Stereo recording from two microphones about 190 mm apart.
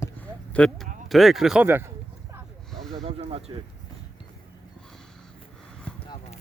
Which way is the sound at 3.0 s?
30° right (ahead or behind).